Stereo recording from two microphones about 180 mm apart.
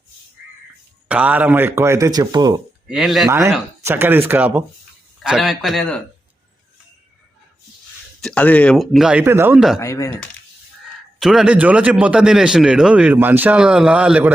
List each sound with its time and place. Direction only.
1.0 s a man's voice: 10° right (ahead or behind)
2.8 s speech: centre (ahead or behind)
3.2 s a man's voice: 15° right (ahead or behind); by 6.0 s 5° left (ahead or behind)
8.2 s speech: 5° left (ahead or behind); by 9.6 s 10° right (ahead or behind)
9.6 s speech: centre (ahead or behind)
9.8 s speech: 15° left (ahead or behind)
11.2 s a man's voice: centre (ahead or behind)